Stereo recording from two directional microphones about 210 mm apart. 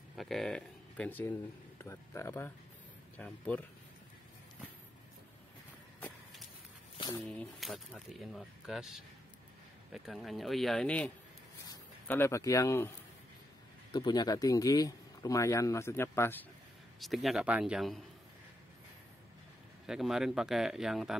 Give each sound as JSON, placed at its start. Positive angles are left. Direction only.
{"t": 0.1, "sound": "speech", "side_deg": 0}
{"t": 5.9, "sound": "walk", "side_deg": 10}
{"t": 7.2, "sound": "speech", "side_deg": 5}
{"t": 13.9, "sound": "speech", "side_deg": 20}
{"t": 17.0, "sound": "speech", "side_deg": 0}
{"t": 19.9, "sound": "speech", "side_deg": 0}